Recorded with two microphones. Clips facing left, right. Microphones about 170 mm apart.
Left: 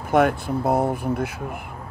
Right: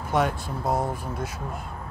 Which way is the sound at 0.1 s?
55° left (ahead or behind).